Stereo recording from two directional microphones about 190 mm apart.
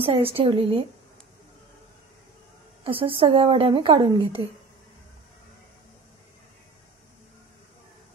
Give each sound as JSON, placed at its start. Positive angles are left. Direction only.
{"t": 0.0, "sound": "a woman's voice", "side_deg": -30}
{"t": 2.8, "sound": "a woman's voice", "side_deg": -30}